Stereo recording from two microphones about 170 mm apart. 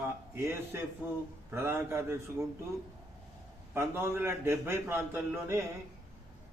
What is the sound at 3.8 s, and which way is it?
A man's voice, 15° right (ahead or behind).